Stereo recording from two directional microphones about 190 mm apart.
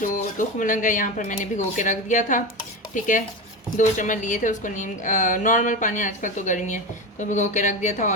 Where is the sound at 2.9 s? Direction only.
45° left (ahead or behind).